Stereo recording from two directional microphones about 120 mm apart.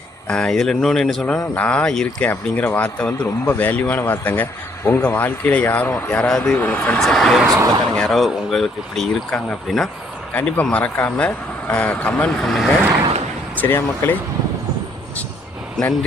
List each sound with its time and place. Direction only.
0.3 s speech: 5° left (ahead or behind)
4.8 s speech: 25° left (ahead or behind)
5.0 s speech: 15° left (ahead or behind)
13.6 s speech: 20° left (ahead or behind)